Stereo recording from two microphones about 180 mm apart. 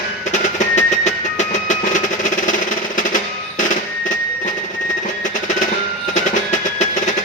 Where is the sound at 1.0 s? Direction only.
40° left (ahead or behind).